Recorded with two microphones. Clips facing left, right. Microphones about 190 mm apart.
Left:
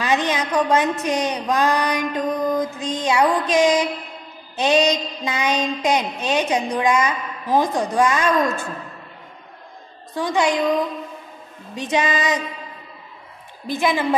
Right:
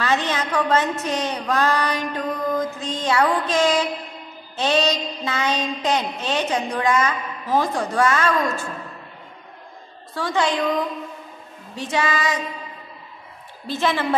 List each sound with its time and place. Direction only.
0.0 s a woman's voice: 15° left (ahead or behind)
10.1 s a woman's voice: 15° left (ahead or behind)
11.7 s a woman's voice: 15° left (ahead or behind)
13.7 s a woman's voice: 15° left (ahead or behind)